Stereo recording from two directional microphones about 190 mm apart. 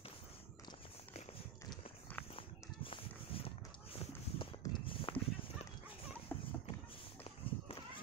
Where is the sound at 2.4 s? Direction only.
30° left (ahead or behind).